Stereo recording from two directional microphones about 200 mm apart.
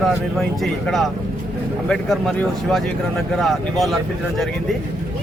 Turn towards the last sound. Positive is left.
turn(degrees=0)  # may be behind; listen again after turning